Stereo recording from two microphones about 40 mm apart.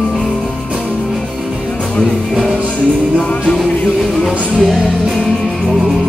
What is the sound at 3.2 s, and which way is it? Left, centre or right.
Music, left.